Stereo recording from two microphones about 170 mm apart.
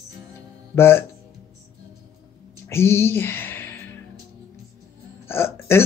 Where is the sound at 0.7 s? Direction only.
15° left (ahead or behind).